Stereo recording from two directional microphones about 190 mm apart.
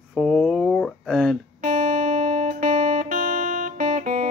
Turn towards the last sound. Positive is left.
turn(degrees=-40)  # may be behind; listen again after turning